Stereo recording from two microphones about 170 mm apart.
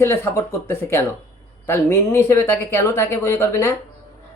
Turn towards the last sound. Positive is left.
turn(degrees=15)  # may be behind; listen again after turning